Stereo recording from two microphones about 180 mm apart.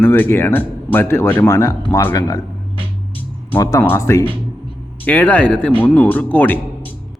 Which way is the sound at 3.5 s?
20° left (ahead or behind).